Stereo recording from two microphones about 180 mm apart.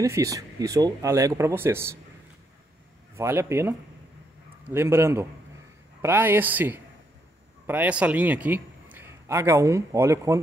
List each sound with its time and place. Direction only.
0.0 s speech: 15° right (ahead or behind)
3.2 s a man's voice: 15° right (ahead or behind)